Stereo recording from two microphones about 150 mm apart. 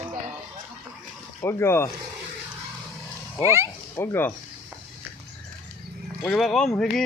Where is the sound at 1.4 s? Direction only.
15° left (ahead or behind).